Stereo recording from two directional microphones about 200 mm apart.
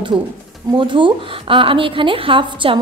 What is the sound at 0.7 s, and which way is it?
A woman's voice, 25° right (ahead or behind).